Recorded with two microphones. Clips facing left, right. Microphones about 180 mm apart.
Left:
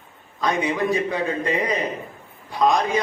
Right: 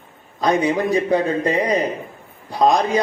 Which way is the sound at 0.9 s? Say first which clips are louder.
Right 5 dB; 35° right (ahead or behind).